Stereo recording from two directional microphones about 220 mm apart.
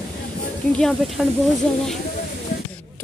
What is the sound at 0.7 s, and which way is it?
Speech, centre (ahead or behind).